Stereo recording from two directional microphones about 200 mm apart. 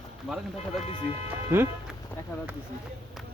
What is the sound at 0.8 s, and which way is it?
Speech, 30° left (ahead or behind).